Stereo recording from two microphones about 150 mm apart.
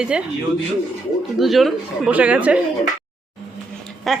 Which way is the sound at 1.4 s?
Centre (ahead or behind).